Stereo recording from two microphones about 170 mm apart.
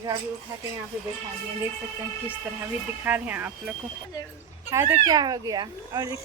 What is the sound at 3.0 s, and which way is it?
Speech, 10° right (ahead or behind).